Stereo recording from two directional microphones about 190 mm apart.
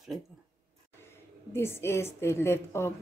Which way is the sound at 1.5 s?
15° left (ahead or behind).